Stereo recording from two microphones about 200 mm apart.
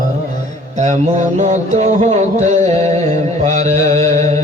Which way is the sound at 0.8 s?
35° right (ahead or behind).